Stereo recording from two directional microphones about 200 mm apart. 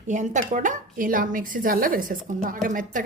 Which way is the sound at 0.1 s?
35° right (ahead or behind).